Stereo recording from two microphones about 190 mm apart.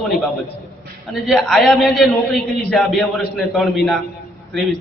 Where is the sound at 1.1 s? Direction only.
Centre (ahead or behind).